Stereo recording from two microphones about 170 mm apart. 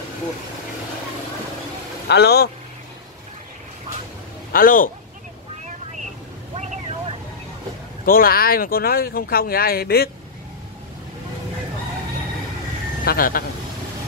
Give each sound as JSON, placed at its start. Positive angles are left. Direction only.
{"t": 2.0, "sound": "speech", "side_deg": 75}
{"t": 4.5, "sound": "a man's voice", "side_deg": 55}
{"t": 6.5, "sound": "vehicle", "side_deg": -40}
{"t": 8.0, "sound": "speech", "side_deg": 60}
{"t": 13.0, "sound": "speech", "side_deg": 60}